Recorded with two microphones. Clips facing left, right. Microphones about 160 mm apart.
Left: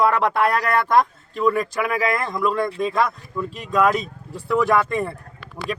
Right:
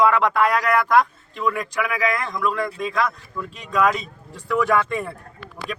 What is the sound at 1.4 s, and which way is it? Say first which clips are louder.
Speech: left 4 dB; 35° left (ahead or behind).